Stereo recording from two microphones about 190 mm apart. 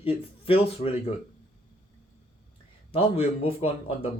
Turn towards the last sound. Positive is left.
turn(degrees=30)  # may be behind; listen again after turning